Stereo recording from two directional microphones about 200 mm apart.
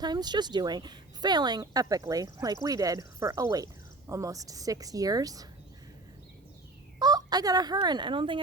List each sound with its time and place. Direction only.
0.0 s speech: 20° right (ahead or behind)
7.0 s speech: 20° right (ahead or behind)